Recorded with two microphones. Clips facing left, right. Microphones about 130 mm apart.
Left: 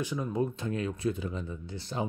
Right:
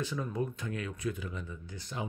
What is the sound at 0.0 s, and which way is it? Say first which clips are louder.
Speech: left 4 dB; 15° left (ahead or behind).